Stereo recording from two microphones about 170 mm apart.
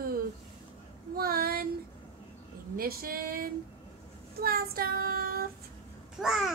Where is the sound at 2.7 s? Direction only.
60° right (ahead or behind).